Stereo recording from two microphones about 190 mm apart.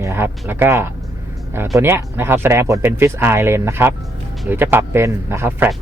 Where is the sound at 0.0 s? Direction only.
10° right (ahead or behind).